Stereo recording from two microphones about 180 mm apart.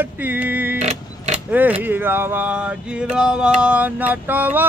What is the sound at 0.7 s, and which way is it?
Vehicle, 40° right (ahead or behind).